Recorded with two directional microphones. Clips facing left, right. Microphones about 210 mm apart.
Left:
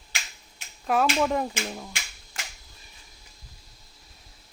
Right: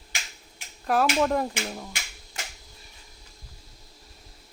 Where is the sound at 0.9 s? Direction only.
Centre (ahead or behind).